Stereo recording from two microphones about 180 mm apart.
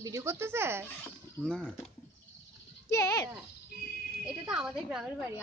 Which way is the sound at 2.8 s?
15° left (ahead or behind).